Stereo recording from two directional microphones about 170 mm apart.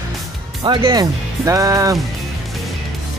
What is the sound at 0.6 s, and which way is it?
Speech, 25° right (ahead or behind).